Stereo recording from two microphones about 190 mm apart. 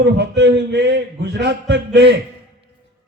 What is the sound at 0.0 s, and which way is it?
A man's voice, 60° right (ahead or behind).